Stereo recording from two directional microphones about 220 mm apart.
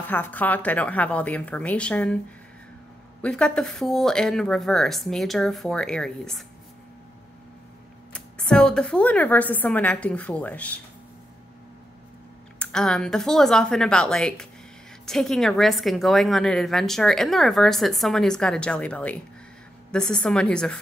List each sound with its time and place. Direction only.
0.0 s a woman's voice: 10° left (ahead or behind)
3.2 s a woman's voice: 5° left (ahead or behind)
8.1 s a woman's voice: 5° left (ahead or behind)
12.5 s a woman's voice: 5° left (ahead or behind)